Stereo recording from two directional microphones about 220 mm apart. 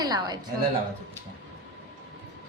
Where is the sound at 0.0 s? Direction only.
20° right (ahead or behind).